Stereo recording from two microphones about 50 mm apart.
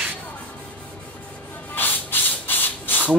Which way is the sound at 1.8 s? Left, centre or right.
Left.